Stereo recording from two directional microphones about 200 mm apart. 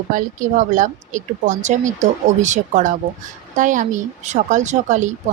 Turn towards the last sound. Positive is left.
turn(degrees=-35)  # may be behind; listen again after turning